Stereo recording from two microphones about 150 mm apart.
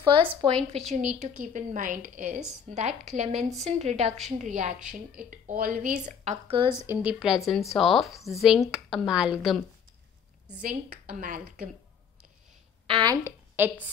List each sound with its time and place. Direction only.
0.0 s a woman's voice: 30° right (ahead or behind); by 3.3 s 50° right (ahead or behind)
3.3 s speech: centre (ahead or behind)
3.6 s a woman's voice: 45° right (ahead or behind)
6.9 s speech: 10° right (ahead or behind)
10.6 s speech: 70° right (ahead or behind)
12.8 s a woman's voice: 30° right (ahead or behind)